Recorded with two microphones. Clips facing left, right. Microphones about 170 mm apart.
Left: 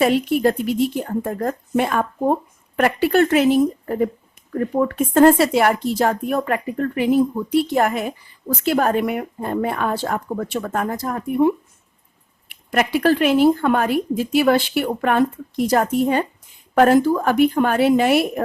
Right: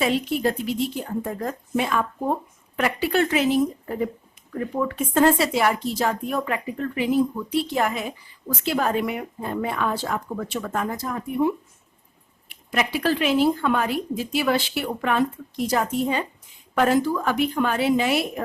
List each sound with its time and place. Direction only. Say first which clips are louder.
0.0 s speech: left 6 dB; 55° left (ahead or behind)
12.7 s speech: left 6 dB; 55° left (ahead or behind)